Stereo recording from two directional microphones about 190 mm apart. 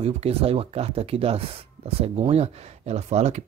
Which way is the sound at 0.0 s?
30° right (ahead or behind).